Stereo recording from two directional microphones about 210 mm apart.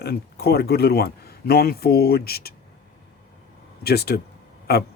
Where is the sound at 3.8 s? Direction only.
50° left (ahead or behind).